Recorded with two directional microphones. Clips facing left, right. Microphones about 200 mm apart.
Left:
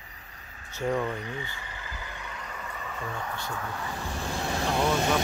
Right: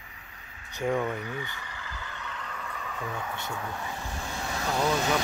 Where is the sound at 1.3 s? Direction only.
25° left (ahead or behind); by 3.2 s centre (ahead or behind).